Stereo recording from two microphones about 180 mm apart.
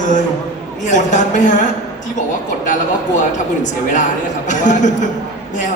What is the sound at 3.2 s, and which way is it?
A man's voice, 45° left (ahead or behind).